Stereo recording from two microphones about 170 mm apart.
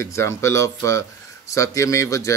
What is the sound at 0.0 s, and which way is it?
Speech, 15° left (ahead or behind).